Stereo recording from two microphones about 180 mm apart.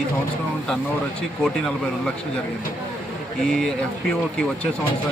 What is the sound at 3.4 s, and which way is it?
Speech, 5° left (ahead or behind).